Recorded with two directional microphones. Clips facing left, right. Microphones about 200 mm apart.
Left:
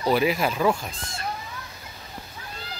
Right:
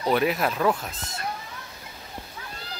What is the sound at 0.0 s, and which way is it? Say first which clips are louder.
Speech: left 1 dB; 5° left (ahead or behind).